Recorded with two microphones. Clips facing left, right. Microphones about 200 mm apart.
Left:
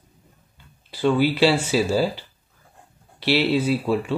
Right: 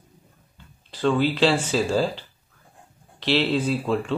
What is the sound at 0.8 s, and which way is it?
Speech, 10° left (ahead or behind).